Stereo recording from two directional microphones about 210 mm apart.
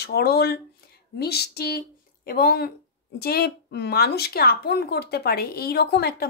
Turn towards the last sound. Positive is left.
turn(degrees=50)  # may be behind; listen again after turning